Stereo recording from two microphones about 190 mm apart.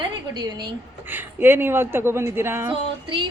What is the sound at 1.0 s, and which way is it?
A woman's voice, 10° right (ahead or behind).